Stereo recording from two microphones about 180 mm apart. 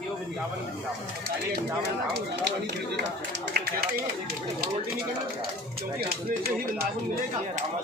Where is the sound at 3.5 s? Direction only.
60° right (ahead or behind).